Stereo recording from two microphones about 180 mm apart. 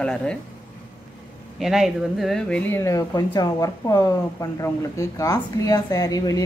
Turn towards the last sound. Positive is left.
turn(degrees=20)  # may be behind; listen again after turning